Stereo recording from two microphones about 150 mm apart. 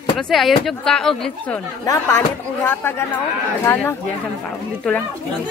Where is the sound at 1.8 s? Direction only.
20° left (ahead or behind).